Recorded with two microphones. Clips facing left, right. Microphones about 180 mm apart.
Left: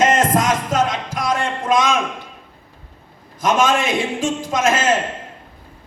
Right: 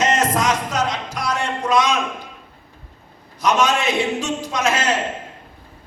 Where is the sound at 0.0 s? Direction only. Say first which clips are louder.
Left 3 dB; 50° left (ahead or behind).